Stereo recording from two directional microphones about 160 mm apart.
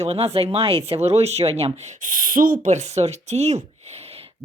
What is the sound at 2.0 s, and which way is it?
Speech, 60° right (ahead or behind).